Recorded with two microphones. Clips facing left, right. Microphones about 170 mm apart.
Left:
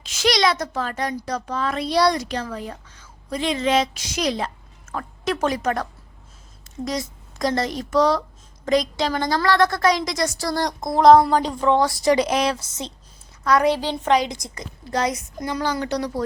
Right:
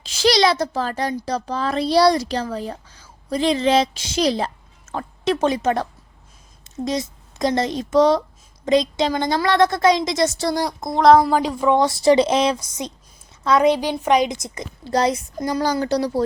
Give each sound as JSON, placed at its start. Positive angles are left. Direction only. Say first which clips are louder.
{"t": 0.0, "sound": "a woman's voice", "louder": "right 3 dB", "side_deg": -30}
{"t": 10.6, "sound": "a woman's voice", "louder": "left 2 dB", "side_deg": -5}
{"t": 11.8, "sound": "a woman's voice", "louder": "right 3 dB", "side_deg": -25}